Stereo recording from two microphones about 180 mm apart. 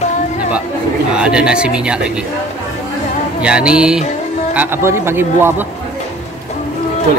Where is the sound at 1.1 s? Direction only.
5° right (ahead or behind).